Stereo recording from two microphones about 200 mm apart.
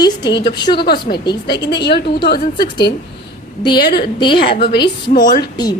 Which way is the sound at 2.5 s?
20° left (ahead or behind).